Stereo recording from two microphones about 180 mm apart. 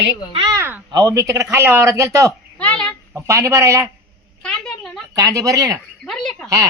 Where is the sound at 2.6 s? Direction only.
5° left (ahead or behind).